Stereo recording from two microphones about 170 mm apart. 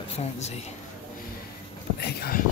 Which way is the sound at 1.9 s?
70° left (ahead or behind).